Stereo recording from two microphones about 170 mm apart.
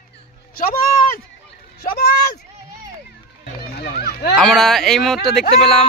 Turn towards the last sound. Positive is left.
turn(degrees=0)  # may be behind; listen again after turning